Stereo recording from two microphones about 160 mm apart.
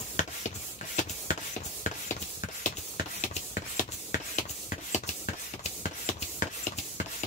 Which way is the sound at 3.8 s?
50° left (ahead or behind).